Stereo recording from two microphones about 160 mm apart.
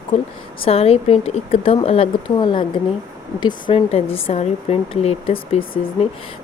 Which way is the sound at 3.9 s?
40° left (ahead or behind).